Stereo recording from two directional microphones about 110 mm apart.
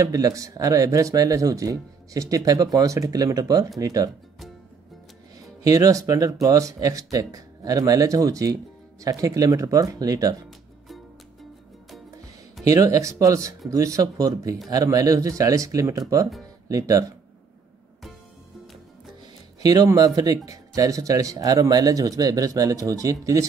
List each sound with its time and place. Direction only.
0.0 s speech: 35° right (ahead or behind)
5.6 s speech: 35° right (ahead or behind)
12.6 s speech: 30° right (ahead or behind)
19.6 s speech: 35° right (ahead or behind)